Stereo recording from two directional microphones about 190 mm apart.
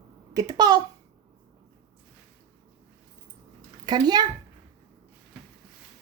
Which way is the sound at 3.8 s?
20° right (ahead or behind).